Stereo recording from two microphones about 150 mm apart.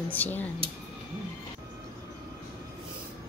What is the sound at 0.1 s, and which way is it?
Speech, 10° left (ahead or behind).